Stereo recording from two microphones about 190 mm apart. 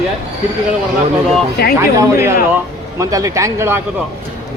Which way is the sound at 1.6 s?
55° left (ahead or behind).